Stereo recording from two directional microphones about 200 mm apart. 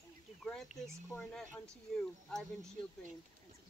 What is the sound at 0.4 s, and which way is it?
Speech, centre (ahead or behind).